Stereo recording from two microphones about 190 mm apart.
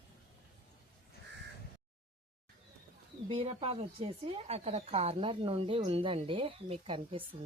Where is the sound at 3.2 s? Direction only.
30° right (ahead or behind).